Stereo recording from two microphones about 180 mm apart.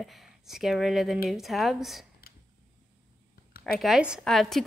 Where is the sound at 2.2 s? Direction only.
55° left (ahead or behind).